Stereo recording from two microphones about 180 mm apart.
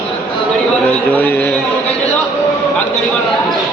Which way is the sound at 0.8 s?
10° left (ahead or behind).